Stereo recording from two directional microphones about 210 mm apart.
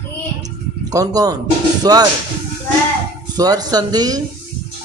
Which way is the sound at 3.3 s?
20° right (ahead or behind).